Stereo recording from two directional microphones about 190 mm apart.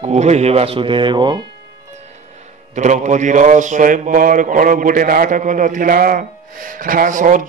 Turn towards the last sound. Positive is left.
turn(degrees=-45)  # may be behind; listen again after turning